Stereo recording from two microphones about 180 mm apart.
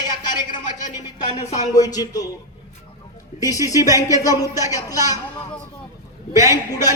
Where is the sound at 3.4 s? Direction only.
20° left (ahead or behind).